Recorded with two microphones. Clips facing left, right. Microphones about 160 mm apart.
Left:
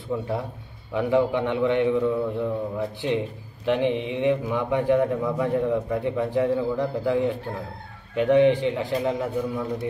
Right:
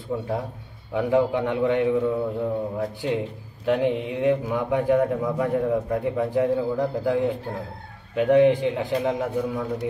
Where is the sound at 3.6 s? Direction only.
10° right (ahead or behind).